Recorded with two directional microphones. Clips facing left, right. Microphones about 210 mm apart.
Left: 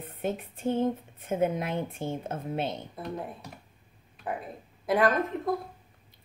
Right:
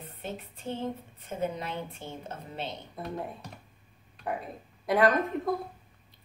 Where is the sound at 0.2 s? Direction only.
50° left (ahead or behind).